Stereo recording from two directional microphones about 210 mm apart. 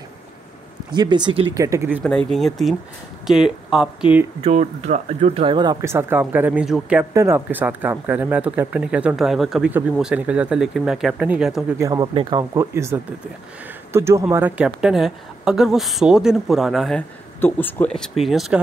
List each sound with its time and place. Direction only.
0.9 s speech: 20° right (ahead or behind)
2.3 s speech: centre (ahead or behind)
4.4 s speech: 30° right (ahead or behind); by 11.6 s 5° right (ahead or behind)
11.8 s speech: 15° right (ahead or behind); by 18.6 s centre (ahead or behind)